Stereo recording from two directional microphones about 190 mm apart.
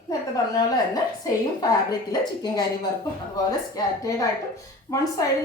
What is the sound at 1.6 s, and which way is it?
A woman's voice, 20° left (ahead or behind).